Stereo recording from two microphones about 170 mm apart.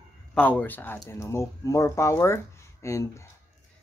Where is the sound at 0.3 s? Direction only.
10° left (ahead or behind).